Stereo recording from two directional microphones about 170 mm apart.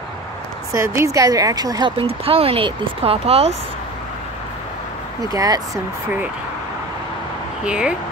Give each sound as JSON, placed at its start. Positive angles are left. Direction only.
{"t": 0.7, "sound": "a woman's voice", "side_deg": -15}
{"t": 5.3, "sound": "a woman's voice", "side_deg": -20}
{"t": 7.6, "sound": "speech", "side_deg": -5}